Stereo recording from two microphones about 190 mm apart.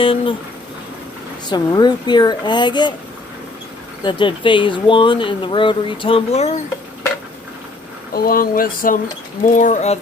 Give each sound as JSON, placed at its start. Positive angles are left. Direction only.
{"t": 0.0, "sound": "speech", "side_deg": 30}
{"t": 1.5, "sound": "speech", "side_deg": 20}
{"t": 4.0, "sound": "speech", "side_deg": 25}
{"t": 8.1, "sound": "speech", "side_deg": 50}